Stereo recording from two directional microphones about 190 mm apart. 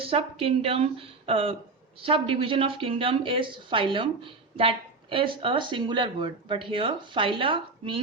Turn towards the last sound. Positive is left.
turn(degrees=-25)  # may be behind; listen again after turning